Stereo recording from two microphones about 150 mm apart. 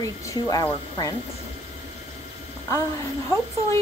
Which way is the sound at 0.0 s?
25° left (ahead or behind).